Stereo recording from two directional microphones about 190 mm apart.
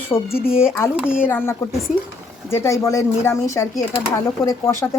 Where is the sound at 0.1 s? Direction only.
15° left (ahead or behind).